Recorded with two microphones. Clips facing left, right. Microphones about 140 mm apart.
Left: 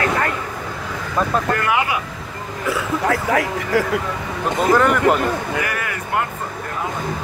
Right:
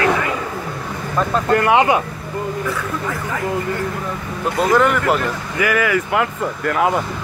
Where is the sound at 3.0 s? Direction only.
75° left (ahead or behind).